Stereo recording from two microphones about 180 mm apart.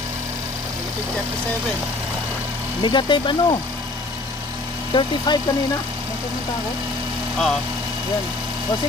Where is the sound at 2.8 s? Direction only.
25° left (ahead or behind).